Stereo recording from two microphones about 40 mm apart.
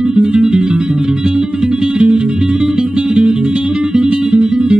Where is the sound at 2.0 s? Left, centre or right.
Right.